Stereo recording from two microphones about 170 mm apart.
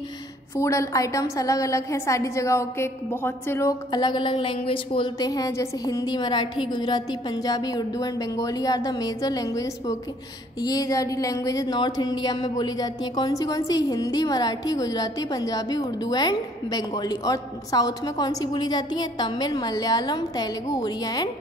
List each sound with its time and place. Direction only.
0.6 s speech: 15° left (ahead or behind)